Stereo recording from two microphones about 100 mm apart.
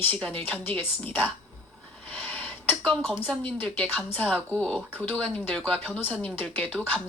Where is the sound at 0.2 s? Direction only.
15° left (ahead or behind).